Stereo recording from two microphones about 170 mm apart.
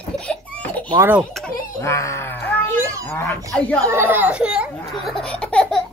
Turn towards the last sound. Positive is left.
turn(degrees=5)  # may be behind; listen again after turning